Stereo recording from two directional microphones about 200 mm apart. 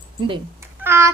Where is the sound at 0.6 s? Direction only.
10° right (ahead or behind).